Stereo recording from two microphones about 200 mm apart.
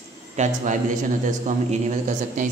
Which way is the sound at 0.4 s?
40° right (ahead or behind).